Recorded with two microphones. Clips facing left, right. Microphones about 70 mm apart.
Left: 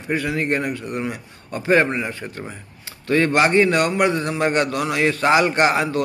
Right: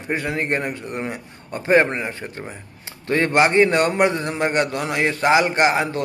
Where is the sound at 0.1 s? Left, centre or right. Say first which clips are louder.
Left 1 dB; right.